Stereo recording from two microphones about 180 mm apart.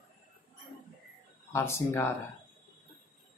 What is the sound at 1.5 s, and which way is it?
Speech, 15° left (ahead or behind).